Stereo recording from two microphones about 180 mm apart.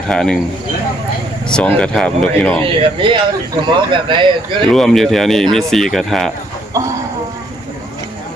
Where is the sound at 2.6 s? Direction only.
30° right (ahead or behind).